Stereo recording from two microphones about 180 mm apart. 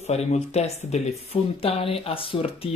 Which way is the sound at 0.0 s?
35° left (ahead or behind).